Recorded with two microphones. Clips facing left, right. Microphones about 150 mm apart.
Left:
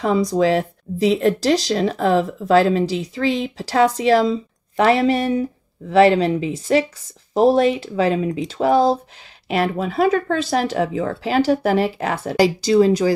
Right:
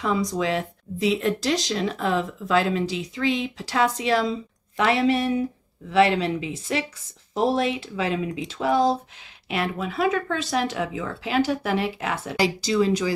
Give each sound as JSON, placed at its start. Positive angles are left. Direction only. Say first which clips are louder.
{"t": 0.0, "sound": "speech", "louder": "left 7 dB", "side_deg": 35}